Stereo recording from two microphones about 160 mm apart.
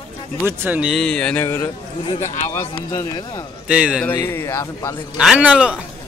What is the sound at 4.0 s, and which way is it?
Speech, 15° left (ahead or behind).